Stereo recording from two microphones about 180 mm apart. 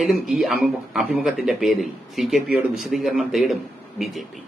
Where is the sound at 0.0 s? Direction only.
Centre (ahead or behind).